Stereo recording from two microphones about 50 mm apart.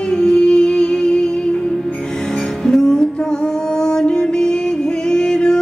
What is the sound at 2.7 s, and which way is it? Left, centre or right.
Music, centre.